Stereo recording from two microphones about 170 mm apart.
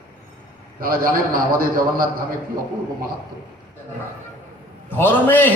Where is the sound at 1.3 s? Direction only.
55° right (ahead or behind).